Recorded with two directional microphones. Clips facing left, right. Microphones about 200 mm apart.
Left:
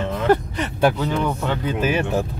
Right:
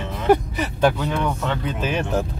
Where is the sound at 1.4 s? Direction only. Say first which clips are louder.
Left 3 dB; 5° left (ahead or behind).